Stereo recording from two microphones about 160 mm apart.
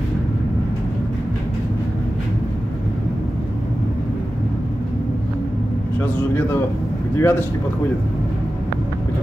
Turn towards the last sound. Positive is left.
turn(degrees=15)  # may be behind; listen again after turning